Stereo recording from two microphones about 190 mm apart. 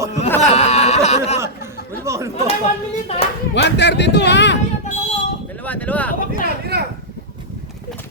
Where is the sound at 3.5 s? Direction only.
65° left (ahead or behind).